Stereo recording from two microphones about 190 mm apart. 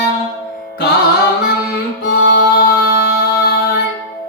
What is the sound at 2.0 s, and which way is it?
Music, 50° left (ahead or behind).